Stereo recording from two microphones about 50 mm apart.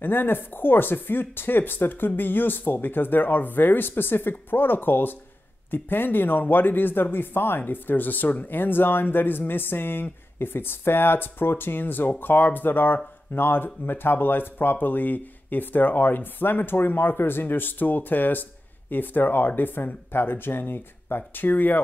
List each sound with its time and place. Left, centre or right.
0.0 s speech: left